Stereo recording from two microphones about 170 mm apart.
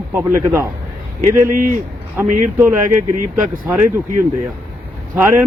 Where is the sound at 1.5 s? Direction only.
55° right (ahead or behind).